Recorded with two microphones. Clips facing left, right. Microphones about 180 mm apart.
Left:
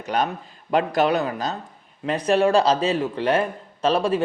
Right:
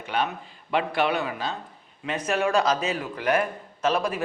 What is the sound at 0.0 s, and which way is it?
A man's voice, 40° left (ahead or behind).